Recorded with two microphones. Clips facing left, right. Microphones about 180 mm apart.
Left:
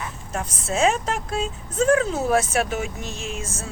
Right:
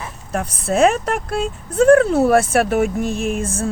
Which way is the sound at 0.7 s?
60° right (ahead or behind).